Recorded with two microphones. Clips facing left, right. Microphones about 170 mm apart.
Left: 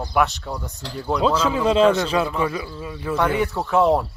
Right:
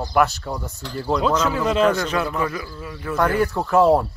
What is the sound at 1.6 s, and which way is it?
Speech, 25° left (ahead or behind).